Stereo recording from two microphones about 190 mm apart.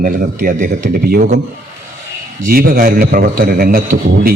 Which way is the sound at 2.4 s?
50° right (ahead or behind).